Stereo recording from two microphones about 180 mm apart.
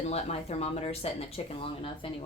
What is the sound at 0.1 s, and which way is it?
A woman's voice, 35° left (ahead or behind).